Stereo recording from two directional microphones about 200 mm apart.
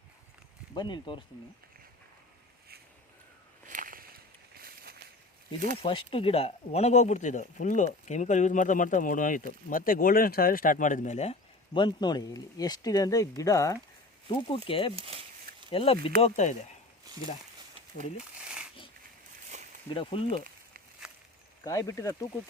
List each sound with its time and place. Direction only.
0.7 s speech: 20° left (ahead or behind)
3.7 s a sound: 40° right (ahead or behind)
5.7 s speech: 25° left (ahead or behind)
14.4 s speech: 25° left (ahead or behind)
14.9 s speech: 30° right (ahead or behind)
15.7 s speech: 25° left (ahead or behind)
17.1 s a sound: 20° right (ahead or behind)
19.9 s speech: 25° left (ahead or behind)
21.6 s speech: 15° left (ahead or behind)